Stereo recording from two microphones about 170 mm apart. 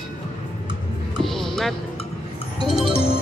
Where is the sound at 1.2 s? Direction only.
Centre (ahead or behind).